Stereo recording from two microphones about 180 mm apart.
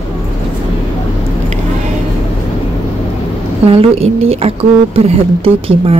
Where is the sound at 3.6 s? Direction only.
35° right (ahead or behind).